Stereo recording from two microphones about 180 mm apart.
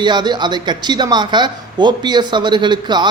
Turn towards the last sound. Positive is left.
turn(degrees=-25)  # may be behind; listen again after turning